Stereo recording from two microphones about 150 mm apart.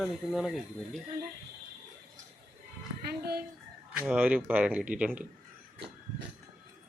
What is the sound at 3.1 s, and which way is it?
Speech, 90° right.